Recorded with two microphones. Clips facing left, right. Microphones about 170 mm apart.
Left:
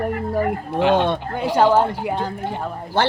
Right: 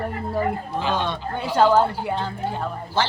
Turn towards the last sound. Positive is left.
turn(degrees=60)  # may be behind; listen again after turning